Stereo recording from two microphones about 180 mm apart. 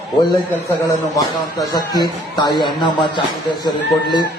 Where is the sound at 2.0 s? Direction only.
25° left (ahead or behind).